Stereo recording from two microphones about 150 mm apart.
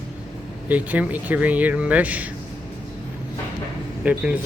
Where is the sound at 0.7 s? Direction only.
10° right (ahead or behind).